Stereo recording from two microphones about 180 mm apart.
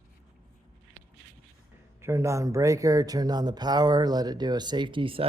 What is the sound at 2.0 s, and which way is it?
Speech, 15° right (ahead or behind).